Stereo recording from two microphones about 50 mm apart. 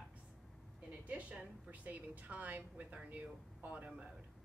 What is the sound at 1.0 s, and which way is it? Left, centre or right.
A woman's voice, right.